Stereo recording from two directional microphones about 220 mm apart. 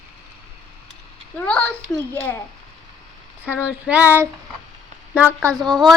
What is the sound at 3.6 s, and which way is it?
Child singing, 5° right (ahead or behind).